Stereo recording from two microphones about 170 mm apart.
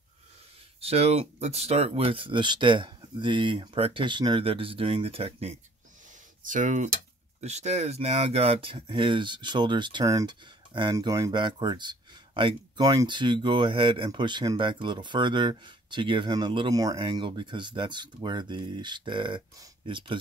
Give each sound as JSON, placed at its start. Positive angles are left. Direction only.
{"t": 0.7, "sound": "speech", "side_deg": -35}
{"t": 6.4, "sound": "speech", "side_deg": -50}